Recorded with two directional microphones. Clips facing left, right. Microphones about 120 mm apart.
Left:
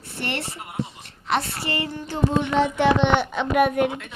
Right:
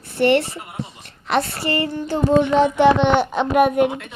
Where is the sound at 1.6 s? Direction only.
45° right (ahead or behind).